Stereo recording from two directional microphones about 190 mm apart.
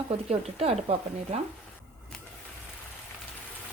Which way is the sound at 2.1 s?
5° left (ahead or behind).